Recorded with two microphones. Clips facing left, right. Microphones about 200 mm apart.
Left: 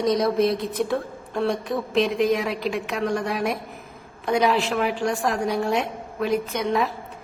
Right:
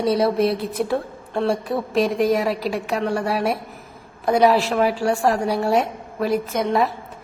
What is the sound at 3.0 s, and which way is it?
Speech, 5° right (ahead or behind).